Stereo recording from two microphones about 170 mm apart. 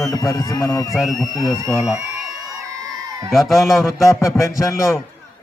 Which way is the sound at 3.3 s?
Centre (ahead or behind).